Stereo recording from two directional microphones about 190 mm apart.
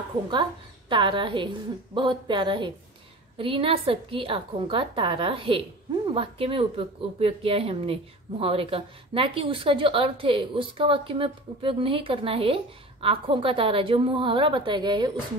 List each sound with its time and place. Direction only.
0.3 s a woman's voice: 25° right (ahead or behind)